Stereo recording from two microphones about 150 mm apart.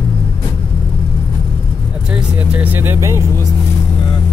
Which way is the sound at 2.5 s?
10° right (ahead or behind).